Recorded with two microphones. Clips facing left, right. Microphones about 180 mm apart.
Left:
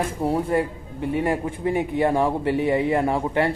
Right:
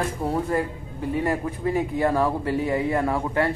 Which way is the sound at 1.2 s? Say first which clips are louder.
Left 1 dB; 25° left (ahead or behind).